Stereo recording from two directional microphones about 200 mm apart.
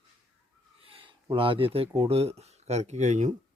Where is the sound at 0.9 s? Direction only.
25° right (ahead or behind).